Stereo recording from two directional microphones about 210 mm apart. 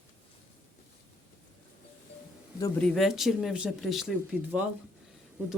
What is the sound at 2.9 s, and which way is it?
Speech, centre (ahead or behind).